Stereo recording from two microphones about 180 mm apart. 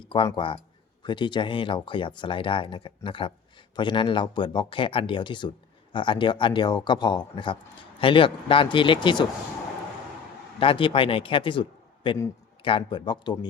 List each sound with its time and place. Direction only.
0.0 s speech: 30° left (ahead or behind)
10.6 s a man's voice: 30° left (ahead or behind)